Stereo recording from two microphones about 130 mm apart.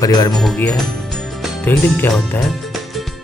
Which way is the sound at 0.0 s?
30° left (ahead or behind).